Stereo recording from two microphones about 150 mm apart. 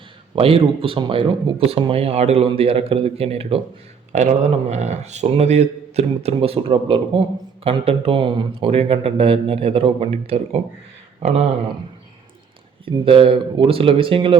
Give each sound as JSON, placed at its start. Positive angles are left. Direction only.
{"t": 0.3, "sound": "speech", "side_deg": -40}
{"t": 4.7, "sound": "a man's voice", "side_deg": -50}
{"t": 12.8, "sound": "speech", "side_deg": -35}